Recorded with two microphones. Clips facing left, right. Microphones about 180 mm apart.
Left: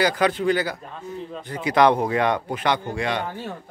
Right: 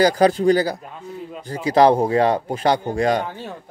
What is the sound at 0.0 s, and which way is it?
A man's voice, 40° right (ahead or behind).